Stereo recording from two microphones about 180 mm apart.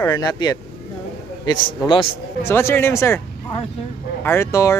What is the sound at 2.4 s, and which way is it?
Speech, 15° left (ahead or behind).